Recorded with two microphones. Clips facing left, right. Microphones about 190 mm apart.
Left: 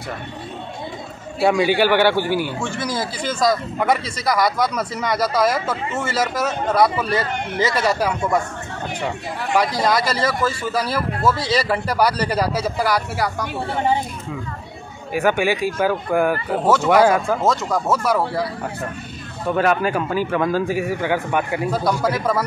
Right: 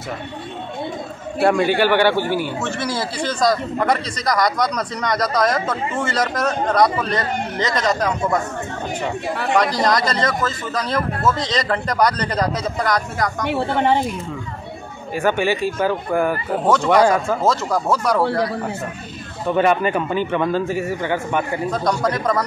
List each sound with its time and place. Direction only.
1.4 s speech: centre (ahead or behind)
9.6 s speech: 5° left (ahead or behind)
13.5 s a woman's voice: 70° right (ahead or behind)
15.1 s speech: 10° left (ahead or behind)
19.4 s speech: centre (ahead or behind)